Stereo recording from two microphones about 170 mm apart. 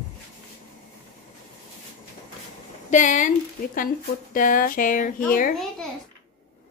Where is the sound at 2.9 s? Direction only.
45° left (ahead or behind).